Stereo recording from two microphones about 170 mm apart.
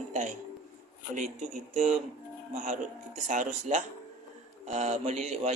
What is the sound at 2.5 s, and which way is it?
Speech, 50° right (ahead or behind).